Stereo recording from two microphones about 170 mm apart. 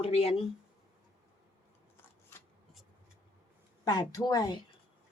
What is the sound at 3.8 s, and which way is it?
Speech, 20° left (ahead or behind).